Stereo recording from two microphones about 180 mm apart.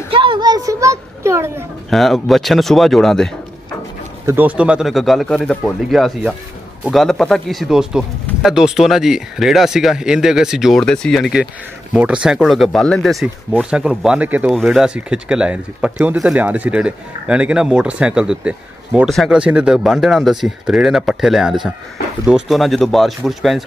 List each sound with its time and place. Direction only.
0.1 s a sound: 30° right (ahead or behind)
1.9 s speech: centre (ahead or behind)
4.3 s speech: 10° right (ahead or behind)